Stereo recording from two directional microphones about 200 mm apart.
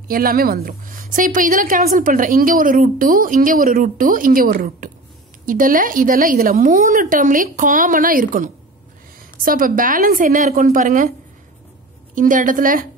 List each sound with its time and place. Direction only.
0.1 s a woman's voice: 45° right (ahead or behind)
12.2 s a woman's voice: 40° right (ahead or behind)